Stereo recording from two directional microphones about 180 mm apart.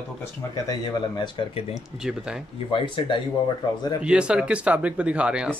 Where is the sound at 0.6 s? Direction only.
20° left (ahead or behind).